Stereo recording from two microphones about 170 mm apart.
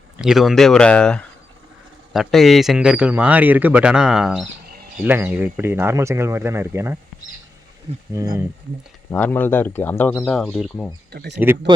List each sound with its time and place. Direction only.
0.2 s speech: centre (ahead or behind)
8.1 s speech: 20° right (ahead or behind)
9.0 s speech: 10° left (ahead or behind)
11.1 s speech: 75° right (ahead or behind)